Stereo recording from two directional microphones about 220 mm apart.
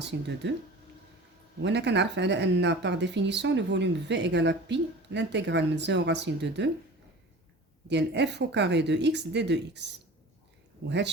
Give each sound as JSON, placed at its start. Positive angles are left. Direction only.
{"t": 0.0, "sound": "speech", "side_deg": -50}
{"t": 1.6, "sound": "speech", "side_deg": -50}
{"t": 7.9, "sound": "speech", "side_deg": -50}
{"t": 10.8, "sound": "speech", "side_deg": -50}